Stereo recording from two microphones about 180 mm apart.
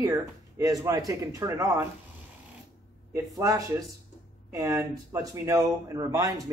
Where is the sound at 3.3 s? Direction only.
15° right (ahead or behind).